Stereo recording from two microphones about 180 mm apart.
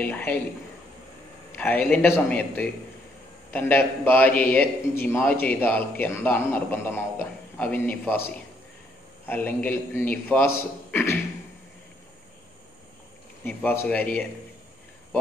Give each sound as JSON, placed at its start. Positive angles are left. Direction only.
{"t": 0.0, "sound": "a man's voice", "side_deg": 10}
{"t": 1.5, "sound": "a man's voice", "side_deg": 10}
{"t": 13.4, "sound": "a man's voice", "side_deg": 10}